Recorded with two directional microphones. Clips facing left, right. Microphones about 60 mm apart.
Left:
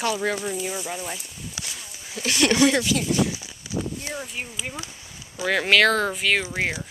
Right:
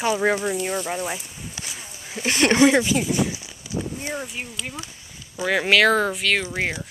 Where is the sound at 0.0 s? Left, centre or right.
Right.